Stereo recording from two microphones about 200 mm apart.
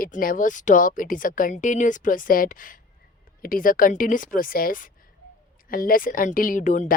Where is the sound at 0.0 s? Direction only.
45° left (ahead or behind).